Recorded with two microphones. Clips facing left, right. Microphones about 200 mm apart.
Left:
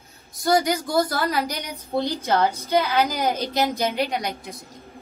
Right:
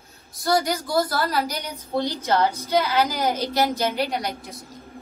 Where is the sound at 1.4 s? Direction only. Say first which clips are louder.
Even; 15° left (ahead or behind).